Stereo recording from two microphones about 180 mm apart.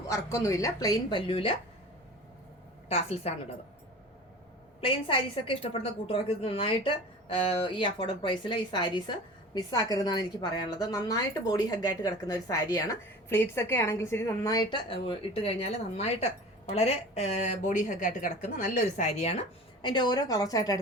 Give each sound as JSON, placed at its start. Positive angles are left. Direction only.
{"t": 0.1, "sound": "a woman's voice", "side_deg": 15}
{"t": 2.9, "sound": "speech", "side_deg": 35}
{"t": 4.8, "sound": "a woman's voice", "side_deg": 30}